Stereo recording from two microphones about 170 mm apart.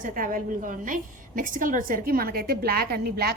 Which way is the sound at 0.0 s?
55° right (ahead or behind).